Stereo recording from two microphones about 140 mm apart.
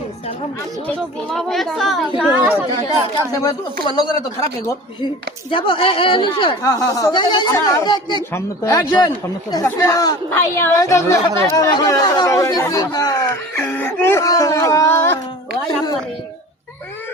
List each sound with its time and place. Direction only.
1.3 s a woman's voice: 5° left (ahead or behind)
5.5 s speech: 40° left (ahead or behind)
6.6 s speech: 25° left (ahead or behind)
13.6 s speech: 15° left (ahead or behind)